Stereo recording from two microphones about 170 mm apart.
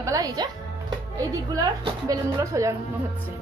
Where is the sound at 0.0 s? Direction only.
20° right (ahead or behind).